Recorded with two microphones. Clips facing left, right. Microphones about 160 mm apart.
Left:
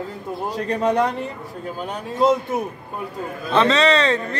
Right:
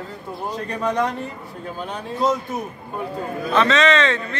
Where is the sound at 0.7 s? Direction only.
30° left (ahead or behind).